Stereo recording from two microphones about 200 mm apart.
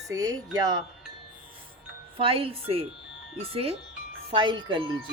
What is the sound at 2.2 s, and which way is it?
Speech, 25° right (ahead or behind).